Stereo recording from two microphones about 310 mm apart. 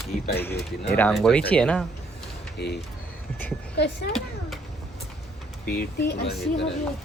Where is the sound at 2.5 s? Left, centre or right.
Left.